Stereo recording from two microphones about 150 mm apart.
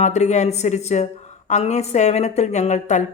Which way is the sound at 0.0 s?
50° left (ahead or behind).